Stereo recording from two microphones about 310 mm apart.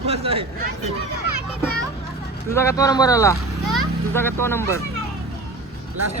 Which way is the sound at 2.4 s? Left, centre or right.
Centre.